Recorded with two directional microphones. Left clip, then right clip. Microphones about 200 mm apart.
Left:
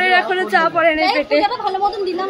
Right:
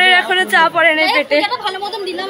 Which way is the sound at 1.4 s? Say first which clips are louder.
Left 2 dB; 40° left (ahead or behind).